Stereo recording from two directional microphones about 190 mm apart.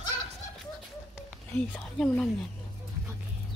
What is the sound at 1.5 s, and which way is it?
Speech, 10° left (ahead or behind).